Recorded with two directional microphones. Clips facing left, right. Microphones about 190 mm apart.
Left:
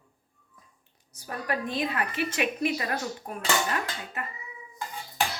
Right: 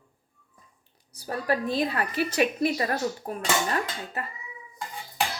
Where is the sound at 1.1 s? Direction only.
35° right (ahead or behind).